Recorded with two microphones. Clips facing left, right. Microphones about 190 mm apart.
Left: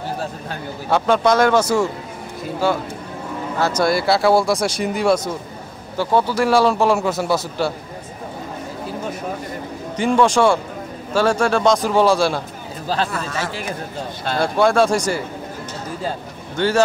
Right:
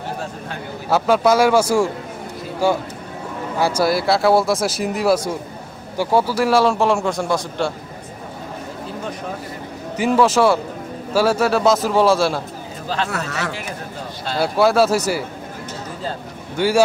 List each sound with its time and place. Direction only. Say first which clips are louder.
0.8 s a man's voice: right 1 dB; 5° right (ahead or behind)
3.5 s speech: even; 10° right (ahead or behind); by 7.7 s 5° left (ahead or behind)
9.9 s speech: even; 5° right (ahead or behind)
12.8 s speech: left 2 dB; 35° left (ahead or behind)
13.1 s speech: even; 70° right (ahead or behind)
14.4 s speech: right 1 dB; 5° right (ahead or behind)
16.5 s speech: right 1 dB; 10° right (ahead or behind)